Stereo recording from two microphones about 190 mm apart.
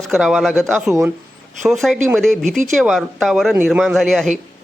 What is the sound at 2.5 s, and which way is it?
Speech, 40° right (ahead or behind).